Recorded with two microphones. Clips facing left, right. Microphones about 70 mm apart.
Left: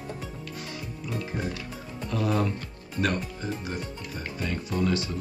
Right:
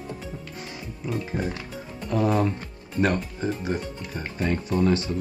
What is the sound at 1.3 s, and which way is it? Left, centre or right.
Speech, right.